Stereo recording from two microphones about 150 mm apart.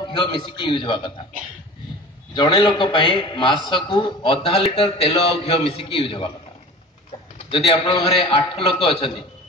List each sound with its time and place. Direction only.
0.1 s a man's voice: 35° left (ahead or behind)
2.3 s a man's voice: 30° left (ahead or behind)
7.4 s a man's voice: 35° left (ahead or behind)